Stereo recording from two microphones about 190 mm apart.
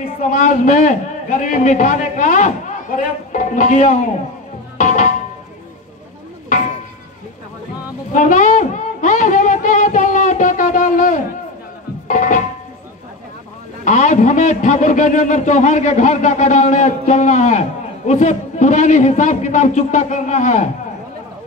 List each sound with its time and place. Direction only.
0.2 s a man's voice: 40° left (ahead or behind)
4.7 s tabla: 40° left (ahead or behind)
8.1 s a sound: 40° left (ahead or behind)
12.1 s music: 40° left (ahead or behind)
13.8 s a man's voice: 40° left (ahead or behind)